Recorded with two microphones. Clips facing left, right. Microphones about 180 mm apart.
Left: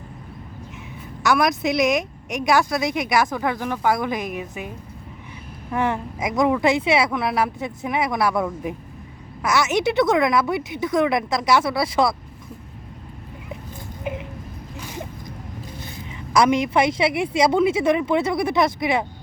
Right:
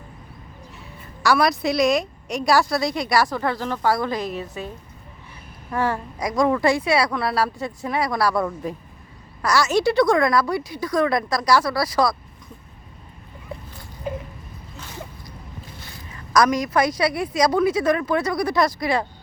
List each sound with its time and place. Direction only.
1.5 s a woman's voice: 20° left (ahead or behind)
5.7 s a woman's voice: 20° left (ahead or behind)
8.4 s a woman's voice: 10° left (ahead or behind)
14.0 s a sound: 15° left (ahead or behind)
16.3 s a woman's voice: 25° left (ahead or behind)